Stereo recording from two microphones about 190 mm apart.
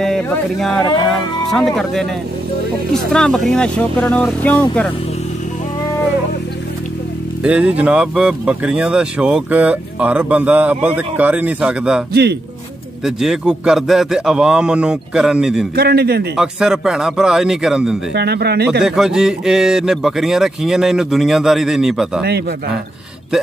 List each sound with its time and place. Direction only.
0.0 s a man's voice: 5° left (ahead or behind)
7.4 s speech: 5° right (ahead or behind)
12.1 s speech: 60° right (ahead or behind)
13.0 s a man's voice: 5° right (ahead or behind)
15.7 s speech: 55° right (ahead or behind)
16.3 s a man's voice: 5° right (ahead or behind)
18.1 s speech: 60° right (ahead or behind)
18.8 s a man's voice: 5° right (ahead or behind)